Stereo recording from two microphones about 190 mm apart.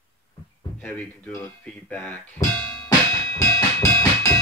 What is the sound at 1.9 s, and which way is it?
Speech, 10° left (ahead or behind).